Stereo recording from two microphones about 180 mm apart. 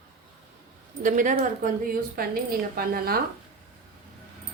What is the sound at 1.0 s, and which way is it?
Speech, 45° right (ahead or behind).